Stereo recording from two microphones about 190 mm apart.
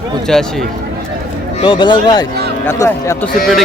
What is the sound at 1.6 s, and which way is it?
A man's voice, 25° left (ahead or behind).